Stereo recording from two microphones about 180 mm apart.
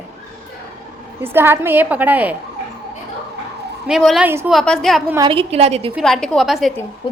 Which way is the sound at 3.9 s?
Centre (ahead or behind).